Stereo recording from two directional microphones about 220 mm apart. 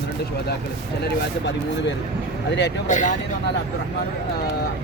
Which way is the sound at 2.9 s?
35° left (ahead or behind).